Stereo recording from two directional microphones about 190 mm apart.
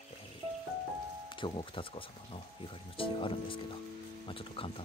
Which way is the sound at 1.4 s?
25° left (ahead or behind).